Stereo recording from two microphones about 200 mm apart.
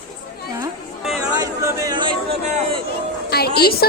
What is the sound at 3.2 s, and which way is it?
Speech, 50° left (ahead or behind).